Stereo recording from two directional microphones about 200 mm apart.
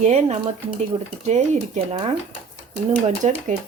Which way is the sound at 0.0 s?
35° right (ahead or behind).